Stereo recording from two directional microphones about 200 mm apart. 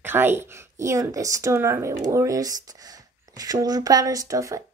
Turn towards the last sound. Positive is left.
turn(degrees=-15)  # may be behind; listen again after turning